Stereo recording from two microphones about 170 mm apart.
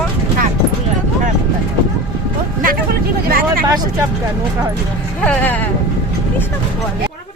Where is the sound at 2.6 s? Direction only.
60° right (ahead or behind).